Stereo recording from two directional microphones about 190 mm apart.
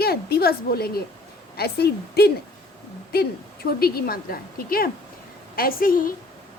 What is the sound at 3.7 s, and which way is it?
A woman's voice, 55° left (ahead or behind).